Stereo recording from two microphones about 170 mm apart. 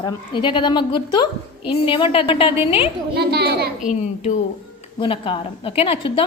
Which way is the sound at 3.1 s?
70° right (ahead or behind).